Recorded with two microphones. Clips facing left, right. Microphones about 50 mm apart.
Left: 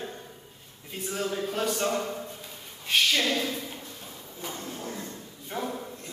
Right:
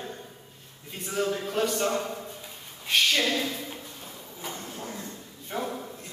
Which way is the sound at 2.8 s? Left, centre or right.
Centre.